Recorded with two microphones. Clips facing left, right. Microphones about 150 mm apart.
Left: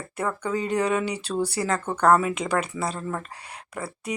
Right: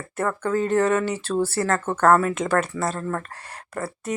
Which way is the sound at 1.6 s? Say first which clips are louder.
Right 3 dB; 15° left (ahead or behind).